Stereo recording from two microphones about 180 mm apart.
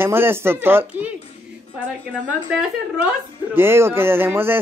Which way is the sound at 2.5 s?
5° right (ahead or behind).